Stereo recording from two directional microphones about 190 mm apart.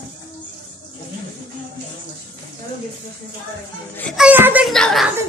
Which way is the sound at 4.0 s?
5° left (ahead or behind).